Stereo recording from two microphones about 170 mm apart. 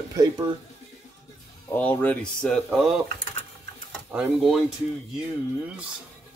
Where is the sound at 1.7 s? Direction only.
10° left (ahead or behind).